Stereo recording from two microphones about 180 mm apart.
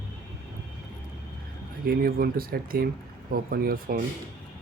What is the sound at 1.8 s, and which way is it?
Speech, 55° right (ahead or behind).